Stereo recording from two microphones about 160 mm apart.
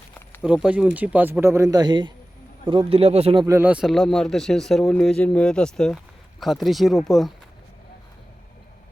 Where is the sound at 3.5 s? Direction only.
10° right (ahead or behind).